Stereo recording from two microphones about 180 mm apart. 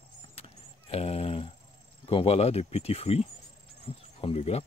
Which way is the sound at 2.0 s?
30° left (ahead or behind).